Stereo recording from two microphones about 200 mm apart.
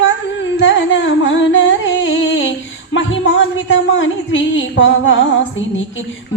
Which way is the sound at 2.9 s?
70° left (ahead or behind).